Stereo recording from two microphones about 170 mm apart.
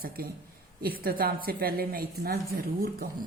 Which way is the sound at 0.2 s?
60° right (ahead or behind).